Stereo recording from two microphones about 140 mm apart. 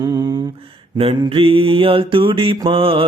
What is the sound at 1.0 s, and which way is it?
Mantra, 40° right (ahead or behind).